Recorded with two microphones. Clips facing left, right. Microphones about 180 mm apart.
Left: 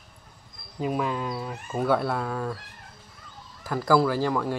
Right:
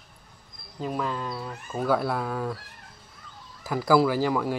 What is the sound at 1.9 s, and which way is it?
Speech, centre (ahead or behind).